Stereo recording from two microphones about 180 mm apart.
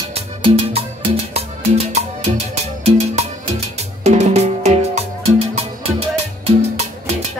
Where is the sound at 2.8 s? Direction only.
35° right (ahead or behind).